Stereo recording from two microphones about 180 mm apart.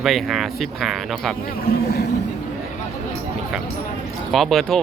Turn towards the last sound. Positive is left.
turn(degrees=0)  # may be behind; listen again after turning